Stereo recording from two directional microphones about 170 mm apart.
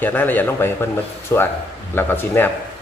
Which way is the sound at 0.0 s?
10° left (ahead or behind).